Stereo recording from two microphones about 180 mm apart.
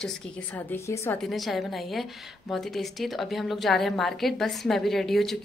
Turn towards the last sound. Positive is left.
turn(degrees=0)  # may be behind; listen again after turning